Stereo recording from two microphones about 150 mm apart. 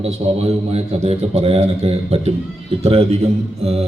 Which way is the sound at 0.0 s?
45° right (ahead or behind).